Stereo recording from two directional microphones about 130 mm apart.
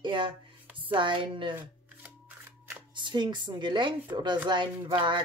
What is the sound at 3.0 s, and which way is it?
A woman's voice, 35° right (ahead or behind).